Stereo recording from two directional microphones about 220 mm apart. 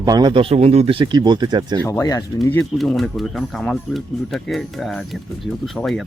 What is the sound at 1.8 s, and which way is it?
Speech, 15° left (ahead or behind).